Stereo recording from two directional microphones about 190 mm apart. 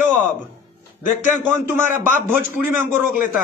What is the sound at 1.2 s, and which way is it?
Speech, 10° right (ahead or behind).